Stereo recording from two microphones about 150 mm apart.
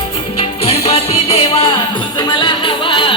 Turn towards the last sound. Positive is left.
turn(degrees=35)  # may be behind; listen again after turning